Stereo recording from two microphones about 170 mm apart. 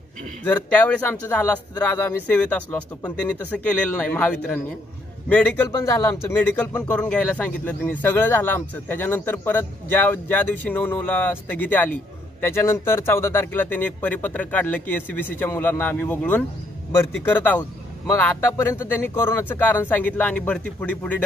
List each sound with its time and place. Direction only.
0.4 s speech: 10° left (ahead or behind)
5.8 s speech: 20° left (ahead or behind)